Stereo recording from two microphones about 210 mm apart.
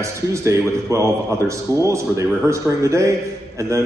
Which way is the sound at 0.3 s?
15° right (ahead or behind).